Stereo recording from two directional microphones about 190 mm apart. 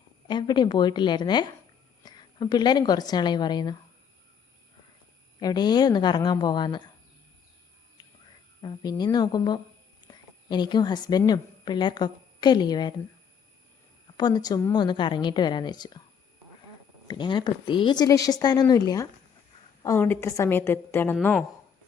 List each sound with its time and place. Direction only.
0.3 s speech: 25° left (ahead or behind)
5.4 s speech: 20° left (ahead or behind)
8.6 s a woman's voice: 20° left (ahead or behind)
14.2 s speech: 20° left (ahead or behind)
17.1 s a woman's voice: 25° left (ahead or behind)